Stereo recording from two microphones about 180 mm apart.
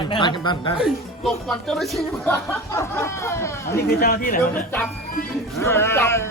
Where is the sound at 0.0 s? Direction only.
25° left (ahead or behind).